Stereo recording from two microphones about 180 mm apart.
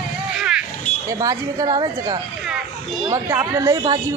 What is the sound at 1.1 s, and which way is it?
A woman's voice, 20° right (ahead or behind).